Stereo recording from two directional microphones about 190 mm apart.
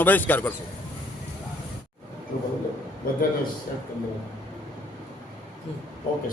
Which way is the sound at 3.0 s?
50° left (ahead or behind).